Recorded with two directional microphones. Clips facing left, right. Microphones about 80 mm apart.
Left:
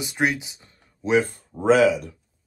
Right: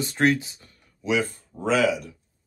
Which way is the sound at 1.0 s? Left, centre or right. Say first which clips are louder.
Left 4 dB; left.